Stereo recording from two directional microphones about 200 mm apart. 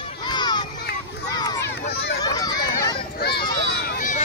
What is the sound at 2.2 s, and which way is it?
Run, 20° left (ahead or behind).